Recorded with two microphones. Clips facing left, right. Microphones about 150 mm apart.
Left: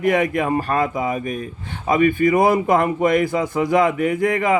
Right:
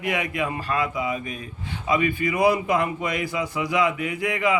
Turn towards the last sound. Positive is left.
turn(degrees=50)  # may be behind; listen again after turning